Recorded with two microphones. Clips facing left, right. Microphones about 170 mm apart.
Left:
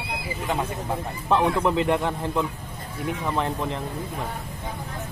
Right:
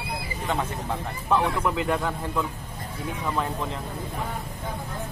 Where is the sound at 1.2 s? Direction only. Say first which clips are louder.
Left 3 dB; 20° left (ahead or behind).